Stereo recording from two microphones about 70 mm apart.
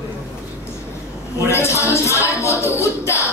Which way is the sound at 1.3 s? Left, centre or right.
Left.